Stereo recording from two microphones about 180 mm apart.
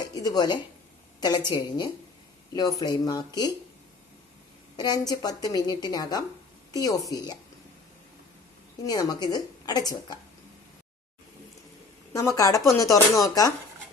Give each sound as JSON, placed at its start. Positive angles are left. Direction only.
{"t": 0.0, "sound": "a sound", "side_deg": 20}
{"t": 1.2, "sound": "a woman's voice", "side_deg": 25}
{"t": 4.8, "sound": "a woman's voice", "side_deg": 20}
{"t": 8.8, "sound": "a woman's voice", "side_deg": 20}
{"t": 12.1, "sound": "a woman's voice", "side_deg": 20}